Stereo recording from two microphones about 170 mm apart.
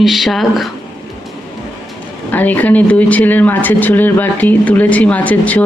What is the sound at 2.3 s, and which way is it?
Speech, 10° left (ahead or behind).